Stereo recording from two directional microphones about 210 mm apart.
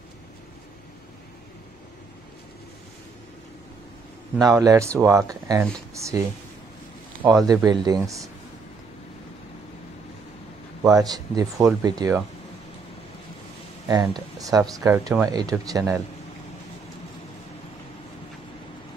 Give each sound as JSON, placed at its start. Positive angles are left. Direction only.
{"t": 4.4, "sound": "speech", "side_deg": -15}
{"t": 7.2, "sound": "speech", "side_deg": -10}
{"t": 10.8, "sound": "speech", "side_deg": -15}
{"t": 13.8, "sound": "speech", "side_deg": -20}